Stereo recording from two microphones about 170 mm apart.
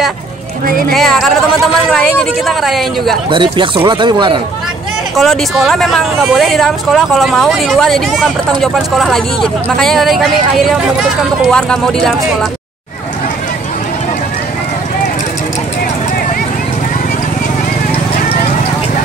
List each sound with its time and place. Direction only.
0.9 s speech: centre (ahead or behind)
3.3 s speech: 30° right (ahead or behind)
5.1 s speech: centre (ahead or behind)